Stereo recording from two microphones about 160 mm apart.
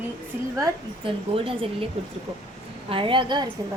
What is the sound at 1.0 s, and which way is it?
Speech, 35° right (ahead or behind).